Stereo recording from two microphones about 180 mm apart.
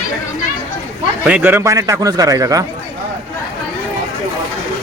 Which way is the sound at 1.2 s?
10° right (ahead or behind).